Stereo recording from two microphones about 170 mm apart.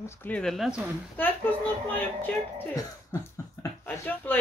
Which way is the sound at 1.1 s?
10° left (ahead or behind).